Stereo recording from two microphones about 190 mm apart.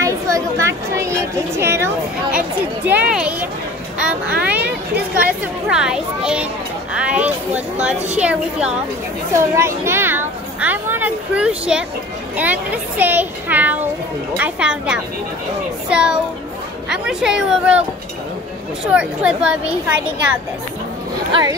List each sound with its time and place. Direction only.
0.0 s a woman's voice: 15° right (ahead or behind)
18.9 s speech: 5° right (ahead or behind)
21.3 s speech: 20° right (ahead or behind)